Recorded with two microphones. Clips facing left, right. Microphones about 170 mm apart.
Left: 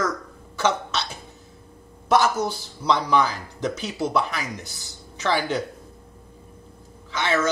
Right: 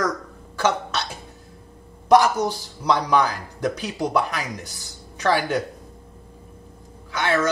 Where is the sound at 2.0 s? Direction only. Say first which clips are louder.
Right 4 dB; 15° right (ahead or behind).